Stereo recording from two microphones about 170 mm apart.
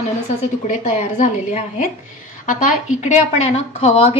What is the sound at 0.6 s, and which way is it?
A woman's voice, 45° left (ahead or behind).